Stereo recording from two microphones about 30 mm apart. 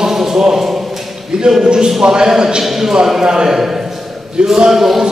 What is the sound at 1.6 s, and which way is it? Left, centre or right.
Speech, right.